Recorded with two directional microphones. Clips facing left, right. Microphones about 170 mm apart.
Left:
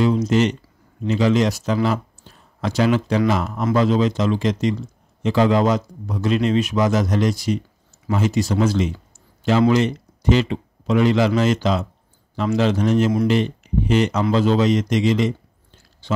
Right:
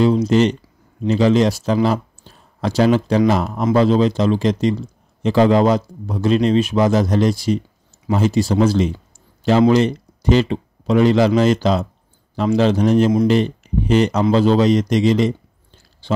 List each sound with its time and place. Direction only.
0.0 s a man's voice: 30° right (ahead or behind)